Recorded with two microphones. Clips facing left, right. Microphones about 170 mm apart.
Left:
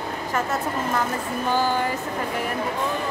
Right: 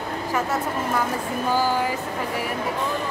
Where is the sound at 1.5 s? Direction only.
10° right (ahead or behind).